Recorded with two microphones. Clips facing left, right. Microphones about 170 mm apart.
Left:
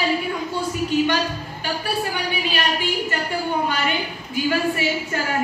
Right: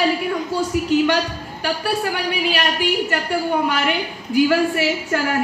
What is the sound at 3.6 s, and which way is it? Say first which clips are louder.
A woman's voice: right 3 dB; 80° right.